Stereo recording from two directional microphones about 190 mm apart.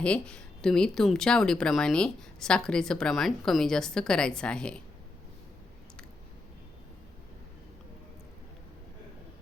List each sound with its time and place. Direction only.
0.0 s speech: 5° left (ahead or behind)